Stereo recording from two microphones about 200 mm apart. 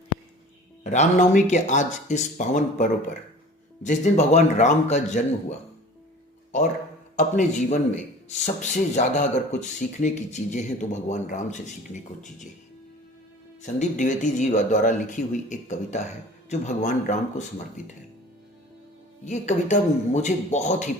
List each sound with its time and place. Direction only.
0.9 s speech: 35° left (ahead or behind)
7.2 s speech: 35° left (ahead or behind)
13.6 s speech: 40° left (ahead or behind)
19.2 s speech: 35° left (ahead or behind)